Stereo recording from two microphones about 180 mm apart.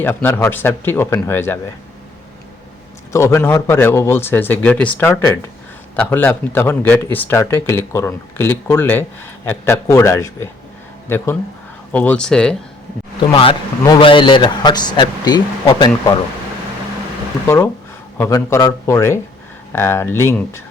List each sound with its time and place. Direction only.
0.0 s speech: 10° left (ahead or behind)
3.1 s speech: 15° left (ahead or behind)
11.9 s speech: 5° left (ahead or behind)
13.3 s speech: 25° left (ahead or behind)
18.2 s speech: 15° left (ahead or behind)